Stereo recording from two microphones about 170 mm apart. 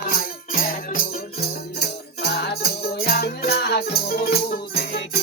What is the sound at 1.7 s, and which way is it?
Music, 75° left (ahead or behind).